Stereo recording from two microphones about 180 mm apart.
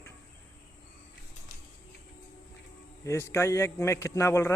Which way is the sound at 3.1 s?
15° left (ahead or behind).